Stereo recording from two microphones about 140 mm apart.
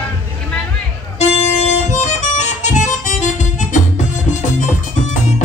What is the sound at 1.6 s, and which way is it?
Music, 55° left (ahead or behind).